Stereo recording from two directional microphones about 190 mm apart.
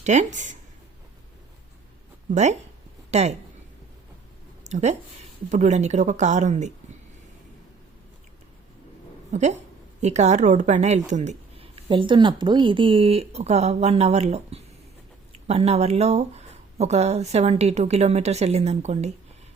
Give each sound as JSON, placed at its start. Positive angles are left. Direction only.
{"t": 0.0, "sound": "speech", "side_deg": -40}
{"t": 2.3, "sound": "a woman's voice", "side_deg": -35}
{"t": 4.6, "sound": "speech", "side_deg": -35}
{"t": 9.3, "sound": "speech", "side_deg": -40}